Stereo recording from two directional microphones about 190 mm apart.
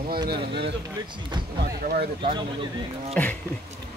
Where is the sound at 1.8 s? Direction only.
50° right (ahead or behind).